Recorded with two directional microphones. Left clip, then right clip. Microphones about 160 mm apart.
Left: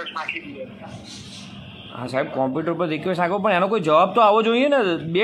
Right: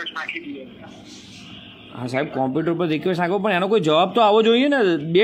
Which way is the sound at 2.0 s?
25° right (ahead or behind).